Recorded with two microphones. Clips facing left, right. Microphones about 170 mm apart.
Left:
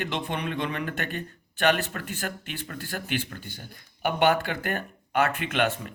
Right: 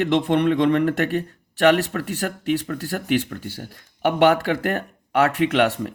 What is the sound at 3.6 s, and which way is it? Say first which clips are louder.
Speech: right 5 dB; 85° right.